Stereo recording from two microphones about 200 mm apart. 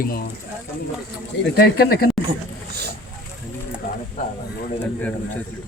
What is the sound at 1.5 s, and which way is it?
Speech, 50° left (ahead or behind).